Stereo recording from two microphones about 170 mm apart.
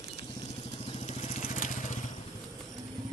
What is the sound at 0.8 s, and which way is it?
Vehicle, 40° left (ahead or behind).